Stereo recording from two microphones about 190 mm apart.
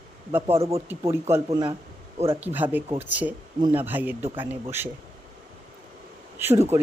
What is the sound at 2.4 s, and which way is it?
Speech, 10° right (ahead or behind).